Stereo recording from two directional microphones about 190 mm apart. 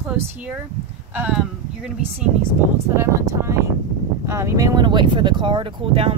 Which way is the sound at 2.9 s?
15° right (ahead or behind).